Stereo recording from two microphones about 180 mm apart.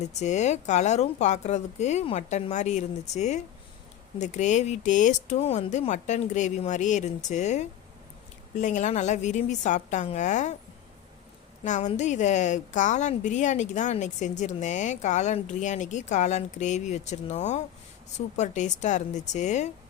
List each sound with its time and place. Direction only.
0.0 s a woman's voice: 40° left (ahead or behind)
11.6 s a woman's voice: 40° left (ahead or behind)